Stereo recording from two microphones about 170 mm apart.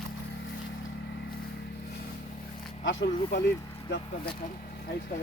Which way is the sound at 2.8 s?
90° left.